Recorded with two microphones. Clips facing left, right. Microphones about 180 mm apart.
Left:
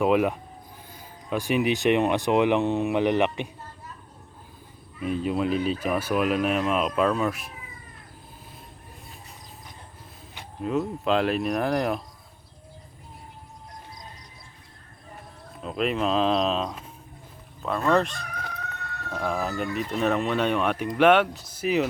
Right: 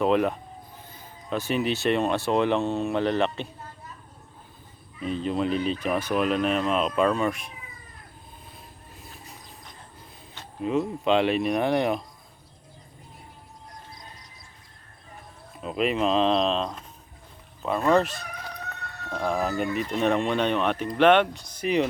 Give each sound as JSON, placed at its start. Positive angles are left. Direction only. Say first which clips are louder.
{"t": 0.0, "sound": "speech", "louder": "left 1 dB", "side_deg": 10}
{"t": 4.9, "sound": "speech", "louder": "left 1 dB", "side_deg": 10}
{"t": 10.6, "sound": "speech", "louder": "right 1 dB", "side_deg": 0}
{"t": 15.6, "sound": "speech", "louder": "right 1 dB", "side_deg": 0}
{"t": 17.9, "sound": "speech", "louder": "right 1 dB", "side_deg": 0}